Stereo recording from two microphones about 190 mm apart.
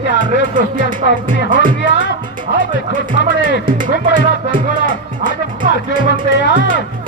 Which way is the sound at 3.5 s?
45° right (ahead or behind).